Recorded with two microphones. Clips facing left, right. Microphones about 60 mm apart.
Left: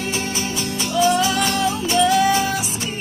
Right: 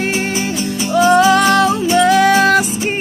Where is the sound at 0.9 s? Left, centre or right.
Right.